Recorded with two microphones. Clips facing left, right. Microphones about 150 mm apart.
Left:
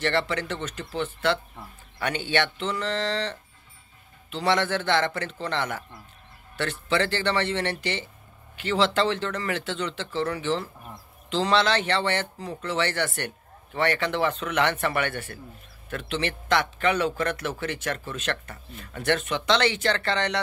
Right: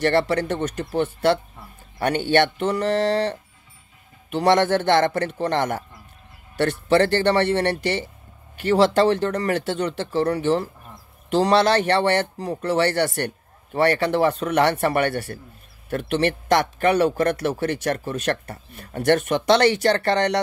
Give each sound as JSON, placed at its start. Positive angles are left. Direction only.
{"t": 0.0, "sound": "speech", "side_deg": -40}
{"t": 15.9, "sound": "speech", "side_deg": -50}